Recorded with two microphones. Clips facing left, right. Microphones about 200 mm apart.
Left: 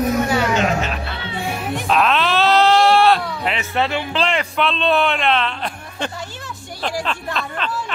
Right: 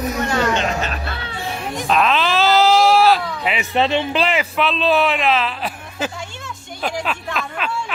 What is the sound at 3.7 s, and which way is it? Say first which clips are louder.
Speech: right 5 dB; 20° right (ahead or behind).